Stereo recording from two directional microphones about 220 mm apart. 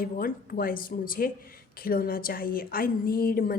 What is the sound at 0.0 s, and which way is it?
A woman's voice, 40° left (ahead or behind).